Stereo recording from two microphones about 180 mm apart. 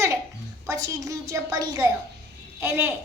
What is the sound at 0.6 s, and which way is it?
A woman's voice, 15° right (ahead or behind).